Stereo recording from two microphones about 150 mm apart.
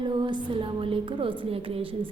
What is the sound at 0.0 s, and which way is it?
A woman's voice, 30° right (ahead or behind).